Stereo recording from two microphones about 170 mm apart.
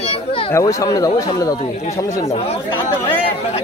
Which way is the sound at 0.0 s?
35° left (ahead or behind).